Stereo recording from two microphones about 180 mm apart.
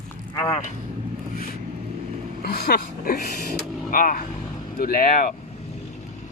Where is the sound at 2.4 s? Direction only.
60° left (ahead or behind).